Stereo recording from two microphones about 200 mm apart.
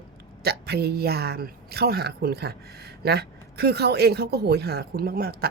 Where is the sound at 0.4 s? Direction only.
55° right (ahead or behind).